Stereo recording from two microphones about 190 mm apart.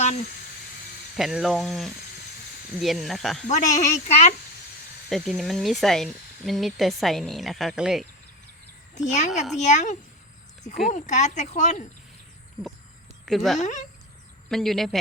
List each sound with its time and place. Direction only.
1.1 s speech: centre (ahead or behind)
3.4 s speech: 40° left (ahead or behind)
5.0 s speech: centre (ahead or behind)
9.0 s speech: 40° left (ahead or behind)
13.2 s speech: centre (ahead or behind)
13.6 s speech: 40° left (ahead or behind)
14.5 s speech: centre (ahead or behind)